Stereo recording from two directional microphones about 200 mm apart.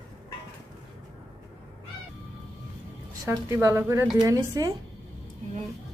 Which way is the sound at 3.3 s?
15° right (ahead or behind).